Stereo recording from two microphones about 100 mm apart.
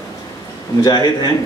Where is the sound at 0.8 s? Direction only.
45° left (ahead or behind).